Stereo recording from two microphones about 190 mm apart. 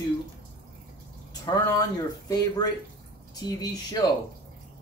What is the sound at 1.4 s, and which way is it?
Speech, 20° left (ahead or behind).